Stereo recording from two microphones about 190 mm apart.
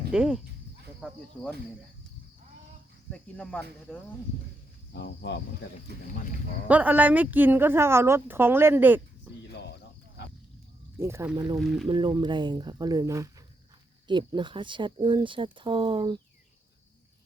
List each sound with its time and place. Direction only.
0.1 s a woman's voice: 5° right (ahead or behind)
3.1 s speech: 5° left (ahead or behind)
4.9 s speech: 65° left (ahead or behind)
6.7 s a woman's voice: 10° right (ahead or behind)
11.0 s a woman's voice: 15° right (ahead or behind)
11.6 s speech: centre (ahead or behind)
11.9 s speech: 25° right (ahead or behind)